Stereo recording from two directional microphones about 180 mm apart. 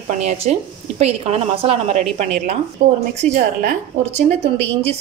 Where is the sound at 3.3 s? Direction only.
45° right (ahead or behind).